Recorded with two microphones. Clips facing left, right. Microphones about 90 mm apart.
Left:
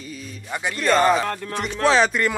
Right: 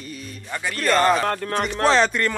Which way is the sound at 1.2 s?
60° right (ahead or behind).